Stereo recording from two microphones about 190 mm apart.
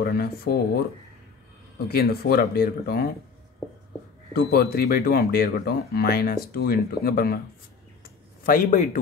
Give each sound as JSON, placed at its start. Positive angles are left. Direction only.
{"t": 0.0, "sound": "speech", "side_deg": 50}
{"t": 1.9, "sound": "speech", "side_deg": 55}
{"t": 4.3, "sound": "speech", "side_deg": 55}
{"t": 8.5, "sound": "speech", "side_deg": 45}